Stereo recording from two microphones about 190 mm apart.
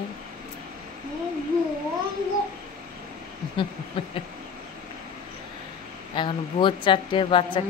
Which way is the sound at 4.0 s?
25° left (ahead or behind).